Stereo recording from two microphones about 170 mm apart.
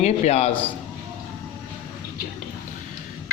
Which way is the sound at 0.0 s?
40° left (ahead or behind).